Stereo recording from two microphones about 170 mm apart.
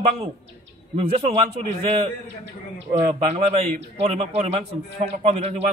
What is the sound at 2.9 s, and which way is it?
A man's voice, 40° right (ahead or behind).